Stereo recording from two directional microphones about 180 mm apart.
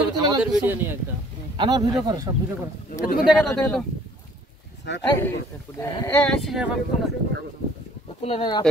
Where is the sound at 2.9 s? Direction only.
50° left (ahead or behind).